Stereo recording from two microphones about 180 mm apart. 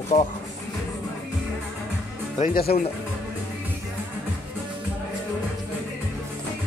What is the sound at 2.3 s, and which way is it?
Speech, 50° left (ahead or behind).